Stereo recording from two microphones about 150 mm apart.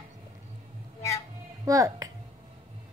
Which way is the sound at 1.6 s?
20° right (ahead or behind).